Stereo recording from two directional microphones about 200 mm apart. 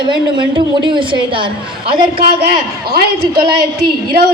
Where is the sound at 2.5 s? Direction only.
50° right (ahead or behind).